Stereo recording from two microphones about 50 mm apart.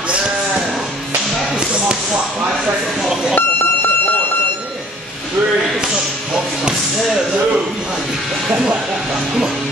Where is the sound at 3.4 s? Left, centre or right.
Left.